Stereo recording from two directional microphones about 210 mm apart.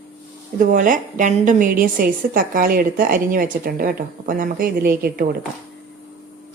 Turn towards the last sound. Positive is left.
turn(degrees=-45)  # may be behind; listen again after turning